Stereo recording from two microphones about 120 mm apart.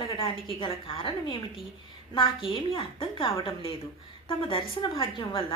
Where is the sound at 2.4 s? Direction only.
45° left (ahead or behind).